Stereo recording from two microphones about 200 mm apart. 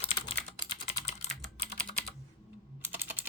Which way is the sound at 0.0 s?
25° left (ahead or behind).